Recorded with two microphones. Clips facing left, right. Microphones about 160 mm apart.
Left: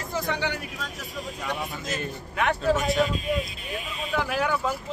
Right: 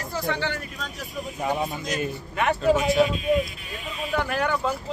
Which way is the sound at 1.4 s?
25° right (ahead or behind).